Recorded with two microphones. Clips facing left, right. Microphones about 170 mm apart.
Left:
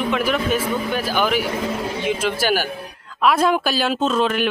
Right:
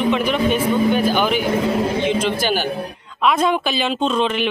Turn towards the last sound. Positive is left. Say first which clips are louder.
# even
turn(degrees=5)  # may be behind; listen again after turning